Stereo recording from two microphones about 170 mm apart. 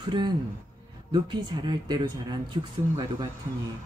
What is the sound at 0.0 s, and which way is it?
Speech, 30° right (ahead or behind).